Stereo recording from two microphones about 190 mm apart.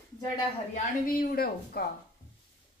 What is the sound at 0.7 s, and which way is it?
A woman's voice, 45° left (ahead or behind).